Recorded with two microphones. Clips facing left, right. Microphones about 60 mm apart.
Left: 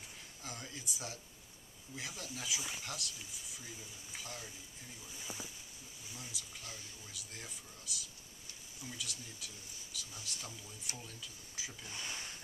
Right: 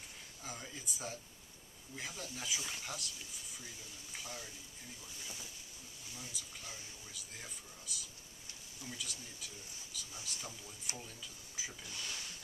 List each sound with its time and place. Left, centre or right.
0.4 s a man's voice: centre
5.2 s speech: centre
6.1 s speech: centre
11.9 s speech: left